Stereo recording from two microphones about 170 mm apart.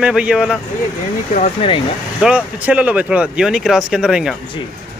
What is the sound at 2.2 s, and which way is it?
Speech, 5° right (ahead or behind).